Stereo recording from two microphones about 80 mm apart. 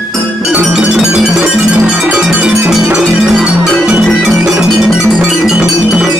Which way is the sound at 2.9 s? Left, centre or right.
Centre.